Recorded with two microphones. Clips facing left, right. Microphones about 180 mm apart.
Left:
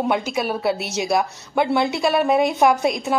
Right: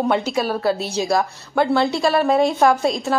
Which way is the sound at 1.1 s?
20° left (ahead or behind).